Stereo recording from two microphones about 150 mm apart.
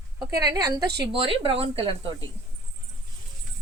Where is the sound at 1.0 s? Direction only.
35° right (ahead or behind).